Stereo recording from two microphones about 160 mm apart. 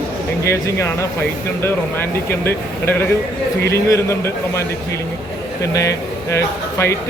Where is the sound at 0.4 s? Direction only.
15° left (ahead or behind).